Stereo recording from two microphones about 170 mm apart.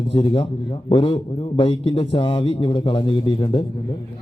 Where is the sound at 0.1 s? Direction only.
30° left (ahead or behind).